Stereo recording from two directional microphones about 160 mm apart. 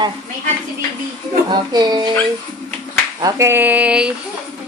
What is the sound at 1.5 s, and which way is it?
Speech, 25° right (ahead or behind).